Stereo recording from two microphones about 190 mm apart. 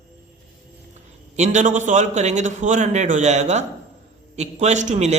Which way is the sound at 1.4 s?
40° right (ahead or behind).